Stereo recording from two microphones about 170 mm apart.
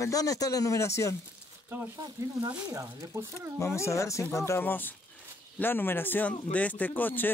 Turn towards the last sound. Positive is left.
turn(degrees=10)  # may be behind; listen again after turning